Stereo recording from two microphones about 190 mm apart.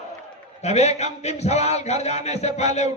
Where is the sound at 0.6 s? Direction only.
35° left (ahead or behind).